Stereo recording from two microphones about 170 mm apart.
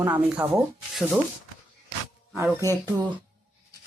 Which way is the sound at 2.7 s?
20° right (ahead or behind).